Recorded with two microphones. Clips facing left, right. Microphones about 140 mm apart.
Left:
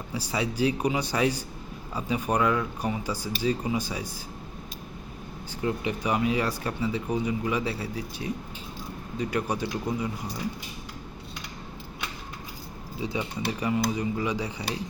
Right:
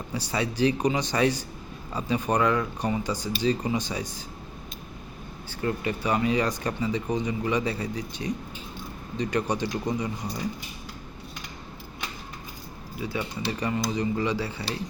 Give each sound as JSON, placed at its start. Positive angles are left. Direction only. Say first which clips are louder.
{"t": 0.1, "sound": "speech", "louder": "even", "side_deg": 10}
{"t": 5.6, "sound": "speech", "louder": "right 1 dB", "side_deg": 10}
{"t": 13.0, "sound": "speech", "louder": "left 1 dB", "side_deg": 20}
{"t": 13.5, "sound": "speech", "louder": "left 1 dB", "side_deg": 10}